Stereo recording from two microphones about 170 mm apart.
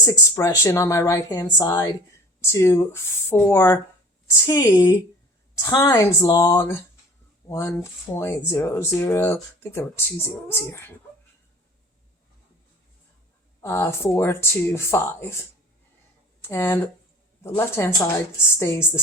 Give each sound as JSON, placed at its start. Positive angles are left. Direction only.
{"t": 0.0, "sound": "speech", "side_deg": 20}
{"t": 13.6, "sound": "speech", "side_deg": 15}
{"t": 16.4, "sound": "speech", "side_deg": 15}